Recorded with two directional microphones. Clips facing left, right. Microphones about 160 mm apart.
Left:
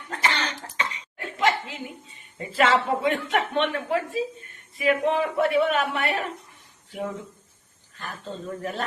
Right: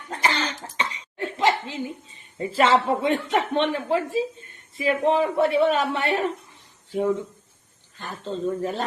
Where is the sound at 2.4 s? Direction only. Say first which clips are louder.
Right 2 dB; 30° right (ahead or behind).